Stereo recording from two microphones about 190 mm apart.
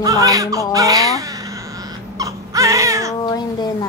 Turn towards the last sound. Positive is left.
turn(degrees=20)  # may be behind; listen again after turning